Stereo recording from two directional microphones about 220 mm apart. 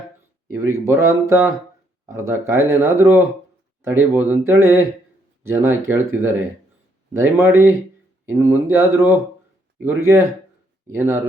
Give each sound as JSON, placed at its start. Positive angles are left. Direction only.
{"t": 0.5, "sound": "speech", "side_deg": -10}